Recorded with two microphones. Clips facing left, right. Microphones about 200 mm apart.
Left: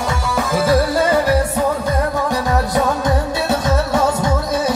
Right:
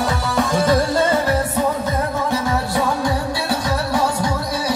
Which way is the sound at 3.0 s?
25° left (ahead or behind).